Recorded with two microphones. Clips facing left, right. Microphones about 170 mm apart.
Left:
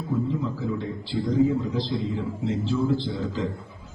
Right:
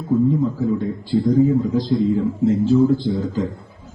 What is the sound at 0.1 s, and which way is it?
Speech, 45° right (ahead or behind).